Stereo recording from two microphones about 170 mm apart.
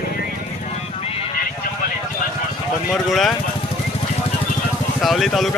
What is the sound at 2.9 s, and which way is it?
Speech, centre (ahead or behind).